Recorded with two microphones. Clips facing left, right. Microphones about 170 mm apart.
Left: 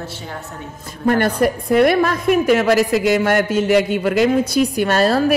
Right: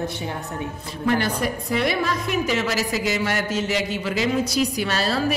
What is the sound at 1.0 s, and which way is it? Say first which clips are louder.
A woman's voice: left 6 dB; 55° left (ahead or behind).